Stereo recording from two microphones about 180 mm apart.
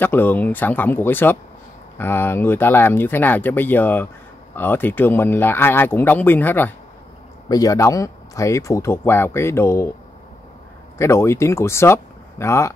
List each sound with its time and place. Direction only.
0.0 s speech: 10° left (ahead or behind)
11.0 s speech: 15° left (ahead or behind)